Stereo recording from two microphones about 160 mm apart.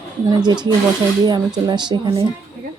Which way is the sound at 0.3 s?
25° right (ahead or behind).